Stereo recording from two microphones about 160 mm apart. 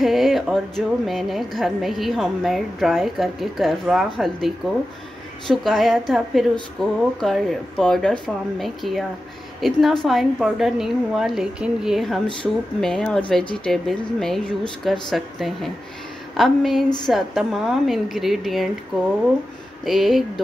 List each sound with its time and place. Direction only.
0.0 s speech: centre (ahead or behind)
5.5 s speech: centre (ahead or behind)
19.8 s speech: centre (ahead or behind)